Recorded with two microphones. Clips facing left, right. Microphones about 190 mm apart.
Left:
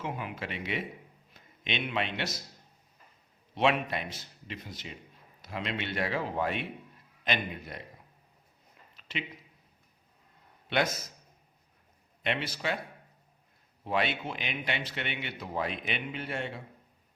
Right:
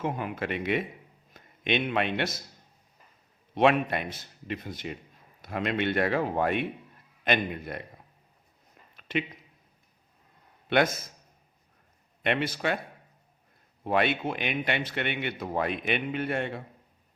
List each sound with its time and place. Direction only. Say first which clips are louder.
0.0 s a man's voice: right 6 dB; 50° right (ahead or behind)
3.5 s a man's voice: right 5 dB; 55° right (ahead or behind)
9.0 s a sound: right 8 dB; 55° right (ahead or behind)
10.7 s a man's voice: right 5 dB; 55° right (ahead or behind)
12.2 s a man's voice: right 5 dB; 55° right (ahead or behind)
13.8 s a man's voice: right 5 dB; 55° right (ahead or behind)